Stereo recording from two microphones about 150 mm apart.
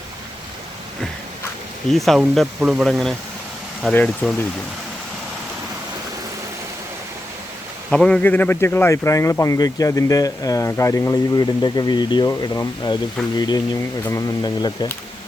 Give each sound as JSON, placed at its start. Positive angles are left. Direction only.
{"t": 1.9, "sound": "speech", "side_deg": 0}
{"t": 7.9, "sound": "speech", "side_deg": 5}